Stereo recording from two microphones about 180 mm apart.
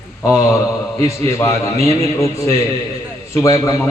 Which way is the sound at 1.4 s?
15° left (ahead or behind).